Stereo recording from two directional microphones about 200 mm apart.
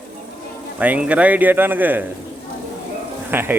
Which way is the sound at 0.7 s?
5° right (ahead or behind).